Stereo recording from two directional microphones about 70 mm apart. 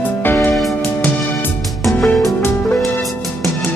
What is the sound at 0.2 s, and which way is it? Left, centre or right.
Music, left.